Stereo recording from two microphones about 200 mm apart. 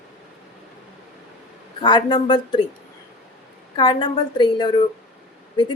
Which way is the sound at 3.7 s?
20° left (ahead or behind).